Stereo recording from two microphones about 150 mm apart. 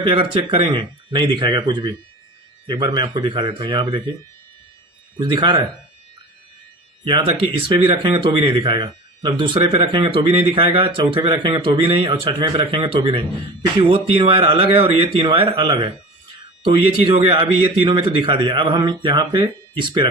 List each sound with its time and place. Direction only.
0.0 s speech: 35° right (ahead or behind)
5.2 s speech: 30° right (ahead or behind)
7.0 s speech: 35° right (ahead or behind)
17.0 s speech: 35° right (ahead or behind)